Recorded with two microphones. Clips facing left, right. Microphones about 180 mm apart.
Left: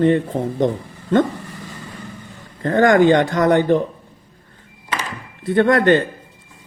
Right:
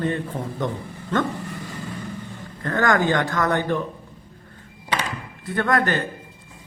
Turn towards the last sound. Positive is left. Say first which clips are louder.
# left 8 dB
turn(degrees=25)  # may be behind; listen again after turning